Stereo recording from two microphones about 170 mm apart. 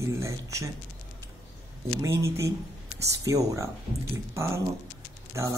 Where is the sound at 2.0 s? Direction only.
15° right (ahead or behind).